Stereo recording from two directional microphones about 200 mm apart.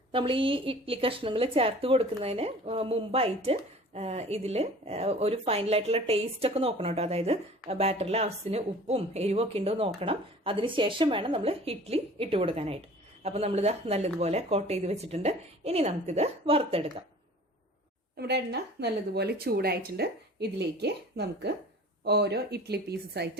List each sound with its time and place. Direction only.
0.1 s a woman's voice: 25° right (ahead or behind)
18.2 s speech: 55° right (ahead or behind)